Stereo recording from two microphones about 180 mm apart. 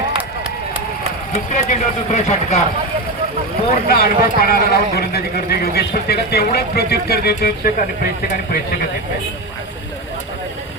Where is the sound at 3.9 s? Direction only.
55° left (ahead or behind).